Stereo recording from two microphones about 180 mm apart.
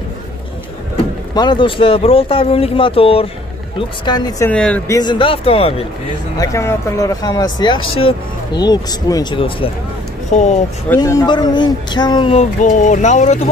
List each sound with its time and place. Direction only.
1.3 s speech: 25° left (ahead or behind)
4.5 s speech: 5° left (ahead or behind)
4.9 s speech: 25° left (ahead or behind)
6.3 s speech: 20° left (ahead or behind)
10.3 s speech: 40° left (ahead or behind)
11.0 s speech: 20° left (ahead or behind)
12.4 s speech: 45° left (ahead or behind)